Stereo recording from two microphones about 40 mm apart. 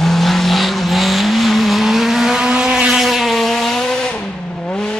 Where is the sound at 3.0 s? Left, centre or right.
Centre.